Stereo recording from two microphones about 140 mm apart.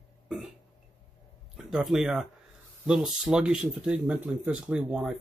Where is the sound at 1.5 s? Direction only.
5° right (ahead or behind).